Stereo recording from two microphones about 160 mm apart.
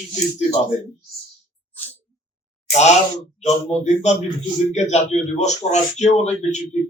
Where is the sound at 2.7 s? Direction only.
45° left (ahead or behind).